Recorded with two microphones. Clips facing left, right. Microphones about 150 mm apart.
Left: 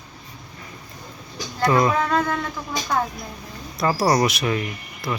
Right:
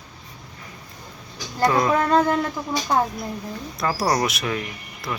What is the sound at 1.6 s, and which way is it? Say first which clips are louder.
Speech: left 1 dB; centre (ahead or behind).